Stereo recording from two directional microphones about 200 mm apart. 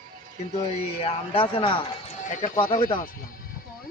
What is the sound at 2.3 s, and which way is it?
Speech, 40° left (ahead or behind).